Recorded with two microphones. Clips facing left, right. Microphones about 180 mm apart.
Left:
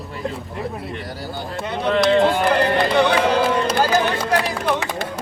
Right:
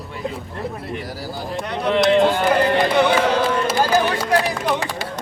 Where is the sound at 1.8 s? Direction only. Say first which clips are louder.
Even; centre (ahead or behind).